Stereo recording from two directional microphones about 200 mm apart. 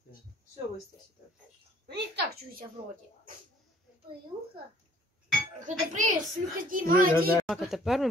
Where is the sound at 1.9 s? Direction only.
55° right (ahead or behind).